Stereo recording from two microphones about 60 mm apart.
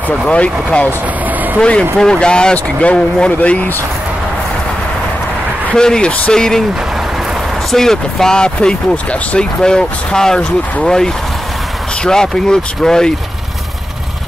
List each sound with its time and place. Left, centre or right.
0.3 s speech: centre
5.8 s speech: centre
7.7 s speech: centre